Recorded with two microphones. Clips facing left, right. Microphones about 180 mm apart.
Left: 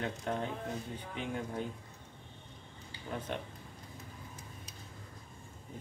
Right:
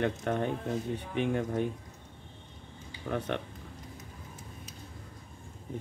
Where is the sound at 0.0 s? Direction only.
70° right (ahead or behind).